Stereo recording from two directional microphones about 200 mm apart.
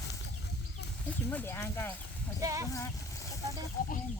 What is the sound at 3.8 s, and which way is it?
Speech, 45° left (ahead or behind).